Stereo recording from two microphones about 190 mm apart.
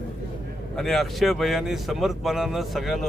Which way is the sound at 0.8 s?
Centre (ahead or behind).